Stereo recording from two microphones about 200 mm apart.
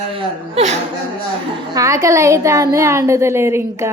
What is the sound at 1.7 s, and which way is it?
A woman's voice, 15° right (ahead or behind).